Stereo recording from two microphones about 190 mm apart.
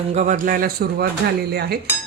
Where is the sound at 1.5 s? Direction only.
55° right (ahead or behind).